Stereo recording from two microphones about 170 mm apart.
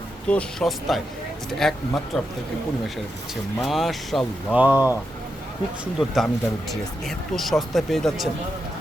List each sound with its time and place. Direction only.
0.3 s speech: 5° left (ahead or behind)
3.6 s speech: centre (ahead or behind)
4.5 s speech: 10° right (ahead or behind)
5.8 s speech: centre (ahead or behind)